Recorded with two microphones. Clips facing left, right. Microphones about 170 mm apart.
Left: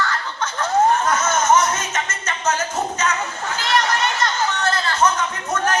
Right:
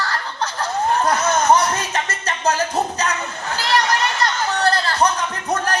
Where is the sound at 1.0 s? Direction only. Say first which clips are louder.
Right 2 dB; 35° right (ahead or behind).